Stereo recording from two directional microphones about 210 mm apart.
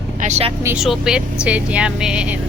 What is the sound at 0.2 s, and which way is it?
Speech, 30° right (ahead or behind).